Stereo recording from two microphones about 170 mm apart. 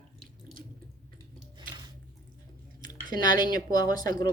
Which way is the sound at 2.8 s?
25° left (ahead or behind).